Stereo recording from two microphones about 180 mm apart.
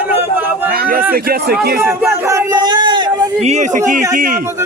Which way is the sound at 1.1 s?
55° right (ahead or behind).